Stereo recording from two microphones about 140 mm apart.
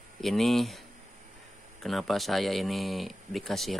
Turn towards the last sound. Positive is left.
turn(degrees=0)  # may be behind; listen again after turning